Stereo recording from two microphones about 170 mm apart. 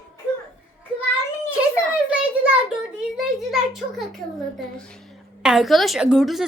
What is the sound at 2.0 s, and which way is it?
A woman's voice, 5° right (ahead or behind).